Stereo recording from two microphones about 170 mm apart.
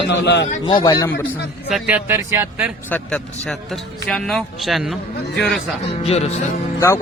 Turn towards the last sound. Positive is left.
turn(degrees=15)  # may be behind; listen again after turning